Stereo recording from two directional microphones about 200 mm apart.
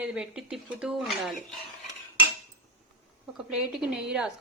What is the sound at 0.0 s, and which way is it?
Speech, 5° right (ahead or behind).